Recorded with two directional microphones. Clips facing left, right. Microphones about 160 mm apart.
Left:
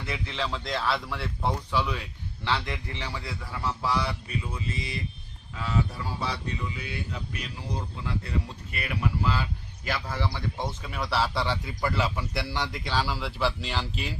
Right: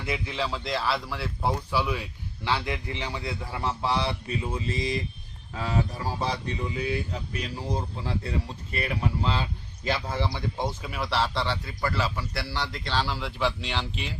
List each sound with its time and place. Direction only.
0.0 s speech: 10° right (ahead or behind)
10.8 s speech: centre (ahead or behind)